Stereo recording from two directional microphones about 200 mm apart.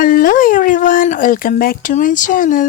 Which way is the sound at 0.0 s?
45° left (ahead or behind).